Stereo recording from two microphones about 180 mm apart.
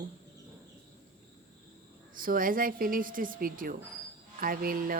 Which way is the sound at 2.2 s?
50° right (ahead or behind).